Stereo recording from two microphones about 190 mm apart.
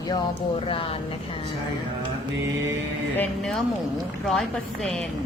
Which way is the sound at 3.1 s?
5° left (ahead or behind).